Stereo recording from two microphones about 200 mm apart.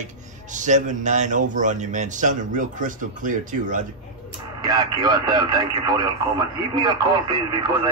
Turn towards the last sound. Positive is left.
turn(degrees=-20)  # may be behind; listen again after turning